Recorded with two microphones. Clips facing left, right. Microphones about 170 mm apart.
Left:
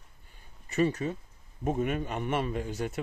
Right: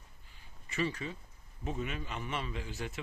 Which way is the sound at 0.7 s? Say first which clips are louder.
Left 8 dB; 45° left (ahead or behind).